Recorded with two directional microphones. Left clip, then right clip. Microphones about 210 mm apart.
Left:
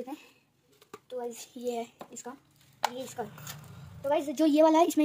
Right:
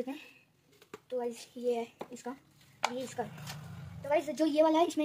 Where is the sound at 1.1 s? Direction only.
30° left (ahead or behind).